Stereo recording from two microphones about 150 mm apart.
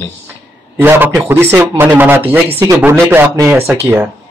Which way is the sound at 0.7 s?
15° right (ahead or behind).